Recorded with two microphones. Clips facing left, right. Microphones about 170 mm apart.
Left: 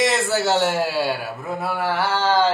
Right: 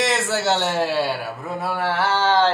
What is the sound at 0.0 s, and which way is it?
A man's voice, centre (ahead or behind).